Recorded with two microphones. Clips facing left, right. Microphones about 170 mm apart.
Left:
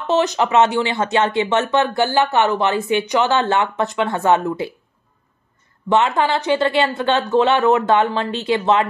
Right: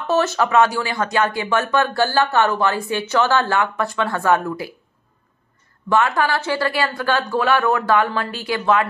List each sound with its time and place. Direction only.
0.0 s speech: 20° left (ahead or behind)
5.9 s speech: 20° left (ahead or behind)